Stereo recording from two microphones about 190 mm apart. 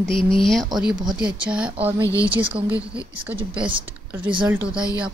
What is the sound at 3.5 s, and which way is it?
Speech, 25° right (ahead or behind).